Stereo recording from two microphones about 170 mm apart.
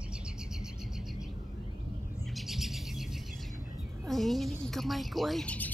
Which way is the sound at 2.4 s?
Centre (ahead or behind).